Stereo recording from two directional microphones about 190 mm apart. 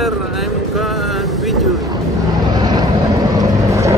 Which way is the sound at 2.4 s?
20° right (ahead or behind).